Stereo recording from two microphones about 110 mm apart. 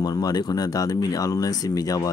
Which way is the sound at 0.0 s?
35° left (ahead or behind).